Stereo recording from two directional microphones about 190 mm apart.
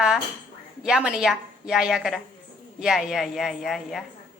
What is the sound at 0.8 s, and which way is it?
A woman's voice, 5° right (ahead or behind).